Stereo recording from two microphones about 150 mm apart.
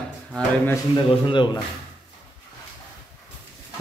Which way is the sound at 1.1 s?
35° left (ahead or behind).